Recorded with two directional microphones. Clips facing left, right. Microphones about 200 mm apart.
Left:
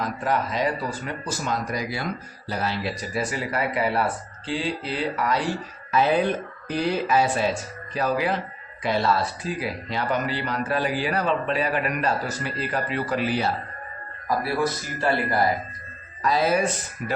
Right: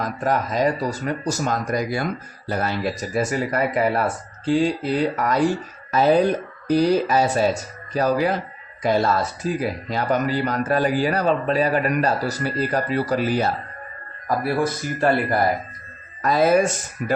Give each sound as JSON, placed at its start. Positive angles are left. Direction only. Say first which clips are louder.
{"t": 0.0, "sound": "speech", "louder": "right 2 dB", "side_deg": -45}
{"t": 16.2, "sound": "speech", "louder": "right 5 dB", "side_deg": -50}